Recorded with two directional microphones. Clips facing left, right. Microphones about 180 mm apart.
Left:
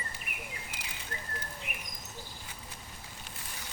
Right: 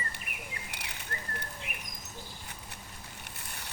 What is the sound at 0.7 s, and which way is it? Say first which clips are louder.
Bird: right 1 dB; 65° right (ahead or behind).